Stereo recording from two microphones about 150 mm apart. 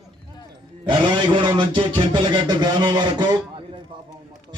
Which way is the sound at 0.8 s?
30° right (ahead or behind).